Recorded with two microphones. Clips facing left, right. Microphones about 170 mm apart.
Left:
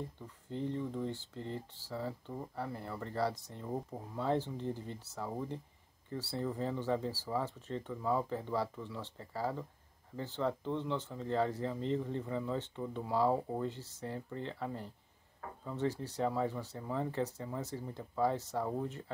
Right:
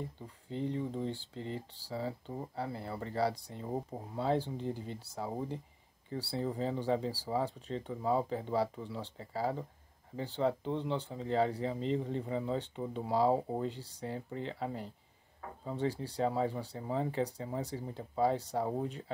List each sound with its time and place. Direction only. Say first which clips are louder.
0.2 s speech: right 2 dB; 15° right (ahead or behind)